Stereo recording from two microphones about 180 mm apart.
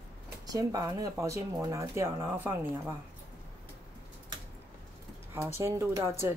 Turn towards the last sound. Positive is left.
turn(degrees=-15)  # may be behind; listen again after turning